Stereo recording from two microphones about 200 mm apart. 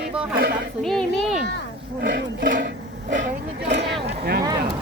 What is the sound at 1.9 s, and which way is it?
Speech, 55° right (ahead or behind).